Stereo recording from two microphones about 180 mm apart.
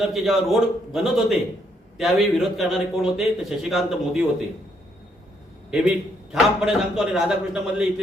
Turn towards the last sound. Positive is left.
turn(degrees=-5)  # may be behind; listen again after turning